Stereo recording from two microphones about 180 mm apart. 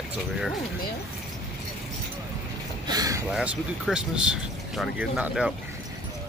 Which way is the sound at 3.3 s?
5° right (ahead or behind).